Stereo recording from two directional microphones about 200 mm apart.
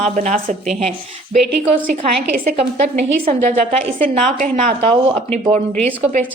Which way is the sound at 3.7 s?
30° right (ahead or behind).